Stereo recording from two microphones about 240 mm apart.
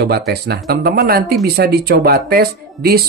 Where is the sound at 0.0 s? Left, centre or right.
Right.